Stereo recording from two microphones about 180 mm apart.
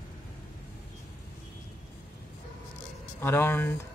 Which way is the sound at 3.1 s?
10° left (ahead or behind).